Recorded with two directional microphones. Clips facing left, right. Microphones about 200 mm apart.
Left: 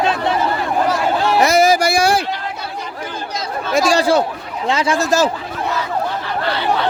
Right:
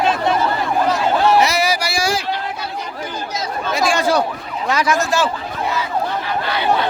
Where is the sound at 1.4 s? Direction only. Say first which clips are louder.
Left 5 dB; 50° left (ahead or behind).